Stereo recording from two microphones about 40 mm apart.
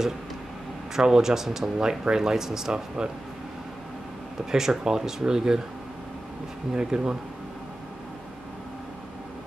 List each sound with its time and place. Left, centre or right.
0.9 s speech: centre
4.5 s speech: centre
6.7 s speech: centre